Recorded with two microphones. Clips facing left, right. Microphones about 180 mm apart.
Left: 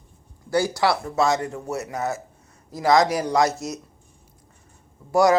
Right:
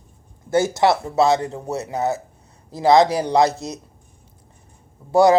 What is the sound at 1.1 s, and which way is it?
Speech, 35° right (ahead or behind).